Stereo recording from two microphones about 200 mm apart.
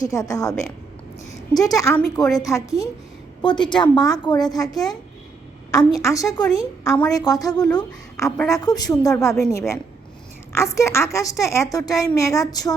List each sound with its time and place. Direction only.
0.1 s a woman's voice: 15° left (ahead or behind)
1.5 s a woman's voice: 20° left (ahead or behind)
6.0 s a woman's voice: 15° left (ahead or behind)